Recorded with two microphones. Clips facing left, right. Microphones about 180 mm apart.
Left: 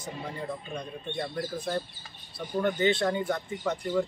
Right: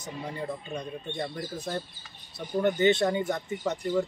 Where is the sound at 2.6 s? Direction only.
20° right (ahead or behind).